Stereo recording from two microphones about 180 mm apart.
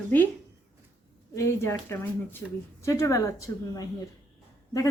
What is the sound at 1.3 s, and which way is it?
A woman's voice, 15° left (ahead or behind).